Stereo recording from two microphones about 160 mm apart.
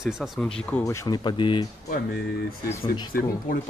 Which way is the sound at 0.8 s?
20° left (ahead or behind).